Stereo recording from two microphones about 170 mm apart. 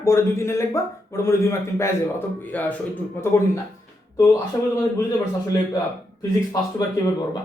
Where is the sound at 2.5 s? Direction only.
10° left (ahead or behind).